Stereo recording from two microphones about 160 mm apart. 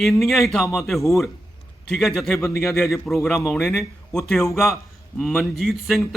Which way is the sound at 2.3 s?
15° left (ahead or behind).